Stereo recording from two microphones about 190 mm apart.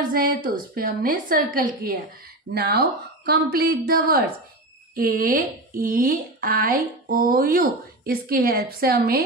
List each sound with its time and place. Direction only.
0.1 s speech: 50° right (ahead or behind)